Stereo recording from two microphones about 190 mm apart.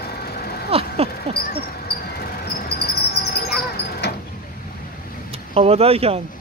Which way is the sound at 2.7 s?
55° left (ahead or behind).